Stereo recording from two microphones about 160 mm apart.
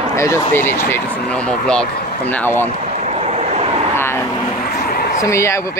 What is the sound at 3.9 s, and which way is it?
Vehicle, 15° left (ahead or behind).